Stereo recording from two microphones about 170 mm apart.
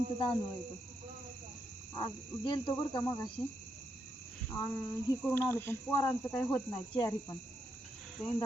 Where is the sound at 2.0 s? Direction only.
30° left (ahead or behind).